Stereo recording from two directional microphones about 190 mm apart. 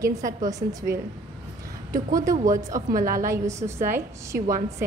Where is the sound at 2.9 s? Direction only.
45° right (ahead or behind).